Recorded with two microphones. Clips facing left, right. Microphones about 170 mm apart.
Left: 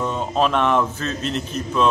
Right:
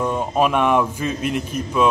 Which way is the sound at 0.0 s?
10° right (ahead or behind).